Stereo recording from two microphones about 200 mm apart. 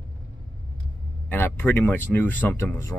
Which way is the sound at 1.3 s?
10° left (ahead or behind).